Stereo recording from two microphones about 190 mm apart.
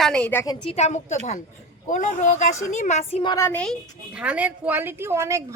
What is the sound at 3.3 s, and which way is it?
Speech, 10° left (ahead or behind).